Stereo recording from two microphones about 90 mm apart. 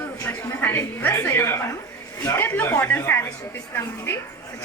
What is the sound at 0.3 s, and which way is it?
A woman's voice, 20° left (ahead or behind).